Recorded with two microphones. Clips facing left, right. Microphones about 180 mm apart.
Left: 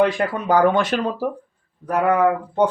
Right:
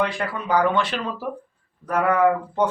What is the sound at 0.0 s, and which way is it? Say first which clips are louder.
Speech: left 6 dB; 45° left (ahead or behind).